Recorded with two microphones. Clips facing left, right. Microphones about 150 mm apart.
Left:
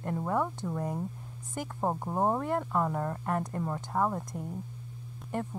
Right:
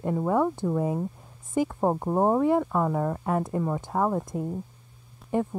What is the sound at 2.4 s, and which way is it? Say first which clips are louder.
Speech: right 7 dB; 5° right (ahead or behind).